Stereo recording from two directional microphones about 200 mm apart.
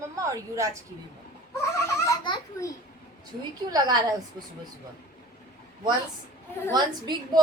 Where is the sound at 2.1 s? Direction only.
20° left (ahead or behind).